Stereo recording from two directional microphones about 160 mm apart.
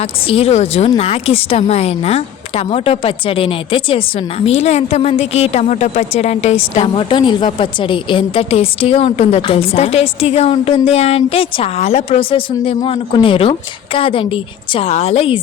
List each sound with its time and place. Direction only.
0.3 s a woman's voice: 35° left (ahead or behind)